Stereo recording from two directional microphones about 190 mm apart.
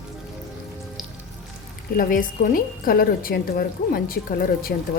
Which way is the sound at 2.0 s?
45° left (ahead or behind).